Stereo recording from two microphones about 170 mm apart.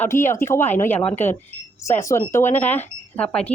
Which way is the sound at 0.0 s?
15° left (ahead or behind).